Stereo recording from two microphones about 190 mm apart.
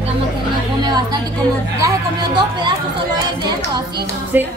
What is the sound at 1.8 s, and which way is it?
Speech, 20° right (ahead or behind).